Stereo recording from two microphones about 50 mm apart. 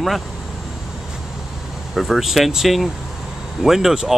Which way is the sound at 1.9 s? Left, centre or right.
Centre.